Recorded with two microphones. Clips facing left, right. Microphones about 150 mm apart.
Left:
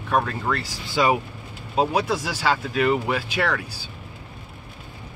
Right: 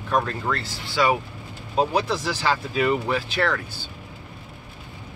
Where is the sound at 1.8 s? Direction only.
10° left (ahead or behind).